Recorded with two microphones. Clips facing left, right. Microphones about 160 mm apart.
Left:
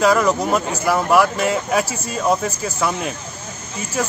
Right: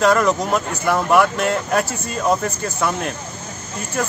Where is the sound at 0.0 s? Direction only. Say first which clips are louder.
Even; centre (ahead or behind).